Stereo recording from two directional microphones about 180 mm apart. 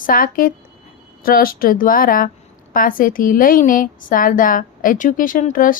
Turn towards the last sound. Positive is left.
turn(degrees=50)  # may be behind; listen again after turning